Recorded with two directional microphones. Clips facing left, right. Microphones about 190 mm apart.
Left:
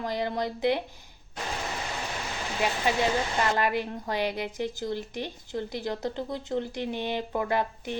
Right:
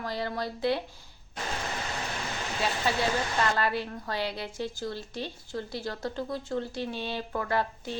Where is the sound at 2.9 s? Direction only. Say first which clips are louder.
Left 2 dB; 15° left (ahead or behind).